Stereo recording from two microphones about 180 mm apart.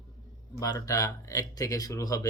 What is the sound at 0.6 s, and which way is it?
Speech, 20° left (ahead or behind).